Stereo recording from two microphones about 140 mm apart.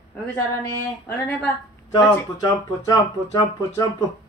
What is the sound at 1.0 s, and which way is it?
Speech, 15° left (ahead or behind).